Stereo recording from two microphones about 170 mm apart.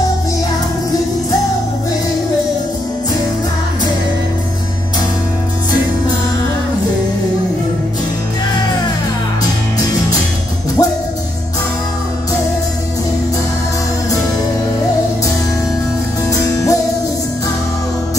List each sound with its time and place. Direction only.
10.8 s music: 20° left (ahead or behind)
16.3 s music: 20° left (ahead or behind)